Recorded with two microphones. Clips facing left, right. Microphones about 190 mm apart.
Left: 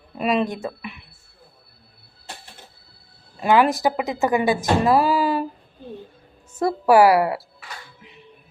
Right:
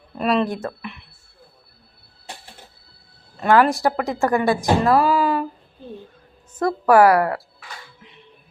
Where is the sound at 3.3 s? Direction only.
5° left (ahead or behind).